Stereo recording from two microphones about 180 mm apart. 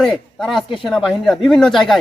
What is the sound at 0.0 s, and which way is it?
Speech, centre (ahead or behind).